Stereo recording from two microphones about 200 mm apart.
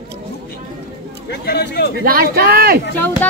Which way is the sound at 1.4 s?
55° left (ahead or behind).